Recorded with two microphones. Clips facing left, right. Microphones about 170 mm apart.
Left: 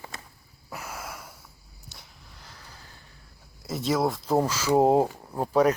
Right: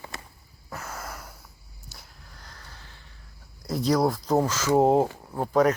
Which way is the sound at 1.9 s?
Centre (ahead or behind).